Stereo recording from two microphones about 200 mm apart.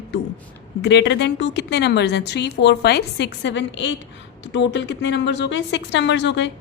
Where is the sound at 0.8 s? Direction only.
60° left (ahead or behind).